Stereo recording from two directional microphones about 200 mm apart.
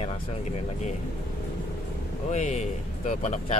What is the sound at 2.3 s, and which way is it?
Speech, 35° left (ahead or behind).